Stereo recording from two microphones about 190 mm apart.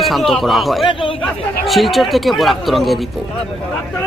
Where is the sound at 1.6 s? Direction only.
Centre (ahead or behind).